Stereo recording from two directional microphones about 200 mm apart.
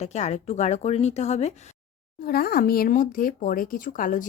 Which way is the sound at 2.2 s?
50° left (ahead or behind).